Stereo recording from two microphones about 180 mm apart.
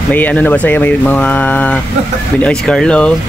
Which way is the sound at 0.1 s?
10° left (ahead or behind).